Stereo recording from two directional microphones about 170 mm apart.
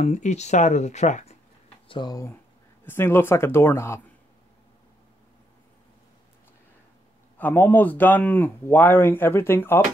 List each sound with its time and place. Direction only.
0.0 s speech: 45° left (ahead or behind)
1.9 s speech: 25° left (ahead or behind)
7.3 s speech: 10° left (ahead or behind)